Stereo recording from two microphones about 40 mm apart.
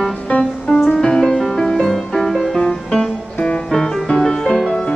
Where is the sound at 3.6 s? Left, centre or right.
Centre.